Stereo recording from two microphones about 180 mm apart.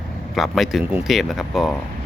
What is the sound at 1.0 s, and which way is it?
Speech, centre (ahead or behind).